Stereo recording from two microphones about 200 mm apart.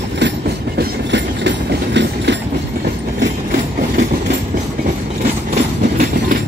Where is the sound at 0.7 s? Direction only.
60° right (ahead or behind).